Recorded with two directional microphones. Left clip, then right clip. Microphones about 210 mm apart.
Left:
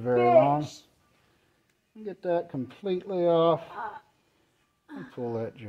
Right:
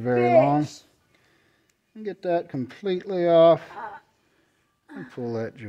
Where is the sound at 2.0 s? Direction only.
35° right (ahead or behind).